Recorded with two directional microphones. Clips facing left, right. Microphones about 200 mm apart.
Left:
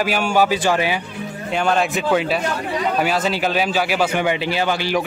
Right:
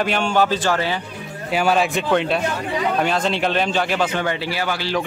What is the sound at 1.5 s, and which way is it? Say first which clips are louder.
A man's voice: right 1 dB; 5° right (ahead or behind).